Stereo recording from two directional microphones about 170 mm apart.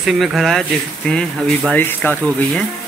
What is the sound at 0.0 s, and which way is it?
Speech, centre (ahead or behind).